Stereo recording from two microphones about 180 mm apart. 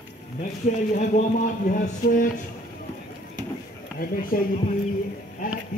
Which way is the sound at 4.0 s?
55° left (ahead or behind).